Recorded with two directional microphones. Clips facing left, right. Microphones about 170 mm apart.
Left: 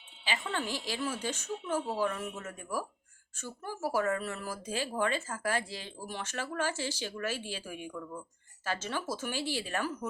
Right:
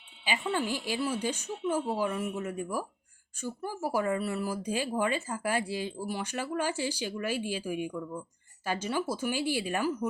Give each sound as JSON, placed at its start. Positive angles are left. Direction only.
{"t": 0.3, "sound": "speech", "side_deg": -10}